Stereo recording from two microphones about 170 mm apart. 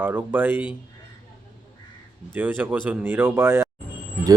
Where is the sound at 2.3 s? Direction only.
10° right (ahead or behind).